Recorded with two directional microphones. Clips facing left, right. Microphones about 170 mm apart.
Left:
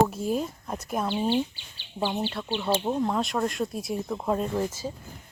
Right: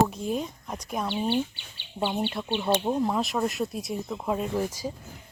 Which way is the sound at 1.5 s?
60° right (ahead or behind).